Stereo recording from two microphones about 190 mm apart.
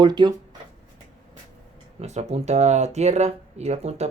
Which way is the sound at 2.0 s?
35° right (ahead or behind).